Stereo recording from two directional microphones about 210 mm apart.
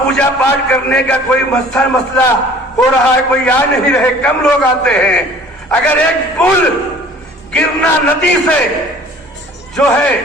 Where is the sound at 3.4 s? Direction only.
5° left (ahead or behind).